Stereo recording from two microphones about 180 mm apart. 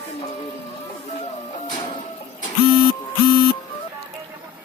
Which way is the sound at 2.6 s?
25° right (ahead or behind).